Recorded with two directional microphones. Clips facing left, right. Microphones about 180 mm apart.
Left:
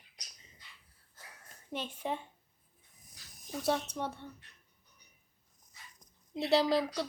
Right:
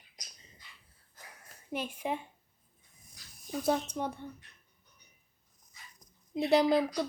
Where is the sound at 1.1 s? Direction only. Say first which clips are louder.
Right 2 dB; 15° right (ahead or behind).